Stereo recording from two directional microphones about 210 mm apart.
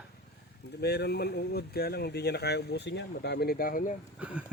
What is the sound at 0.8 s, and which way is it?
Speech, 50° left (ahead or behind).